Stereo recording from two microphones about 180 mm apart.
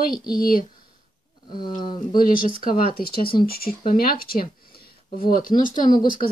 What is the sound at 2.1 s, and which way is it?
Speech, 50° left (ahead or behind).